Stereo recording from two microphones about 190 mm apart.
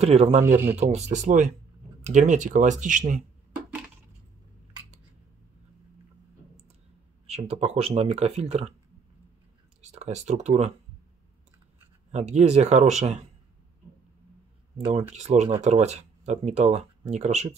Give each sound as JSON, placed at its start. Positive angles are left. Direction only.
{"t": 0.0, "sound": "speech", "side_deg": -35}
{"t": 7.2, "sound": "speech", "side_deg": -35}
{"t": 9.8, "sound": "speech", "side_deg": -35}
{"t": 12.1, "sound": "speech", "side_deg": -35}
{"t": 14.9, "sound": "speech", "side_deg": -35}